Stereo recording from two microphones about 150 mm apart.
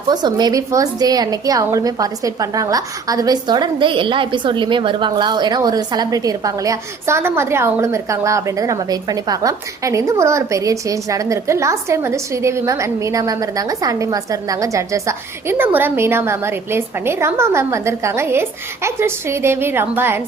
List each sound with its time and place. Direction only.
0.1 s a woman's voice: 30° right (ahead or behind)